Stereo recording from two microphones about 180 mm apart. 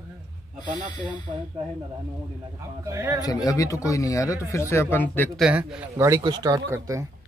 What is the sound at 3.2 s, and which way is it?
Speech, 20° left (ahead or behind).